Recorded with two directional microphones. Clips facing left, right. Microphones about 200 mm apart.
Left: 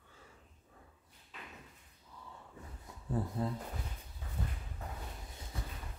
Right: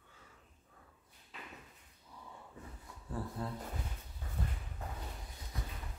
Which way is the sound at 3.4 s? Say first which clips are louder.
Left 5 dB; 20° left (ahead or behind).